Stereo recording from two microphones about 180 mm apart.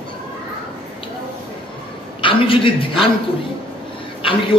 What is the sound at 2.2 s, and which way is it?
Speech, 30° left (ahead or behind).